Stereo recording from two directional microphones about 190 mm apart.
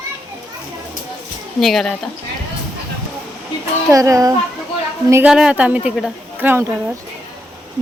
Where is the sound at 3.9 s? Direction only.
15° right (ahead or behind).